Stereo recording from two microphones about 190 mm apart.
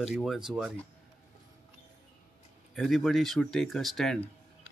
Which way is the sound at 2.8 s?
Centre (ahead or behind).